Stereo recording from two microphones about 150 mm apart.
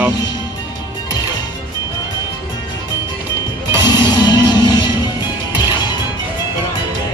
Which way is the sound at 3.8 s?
25° left (ahead or behind).